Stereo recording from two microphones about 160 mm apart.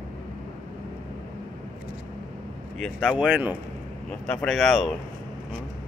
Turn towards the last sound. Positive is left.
turn(degrees=0)  # may be behind; listen again after turning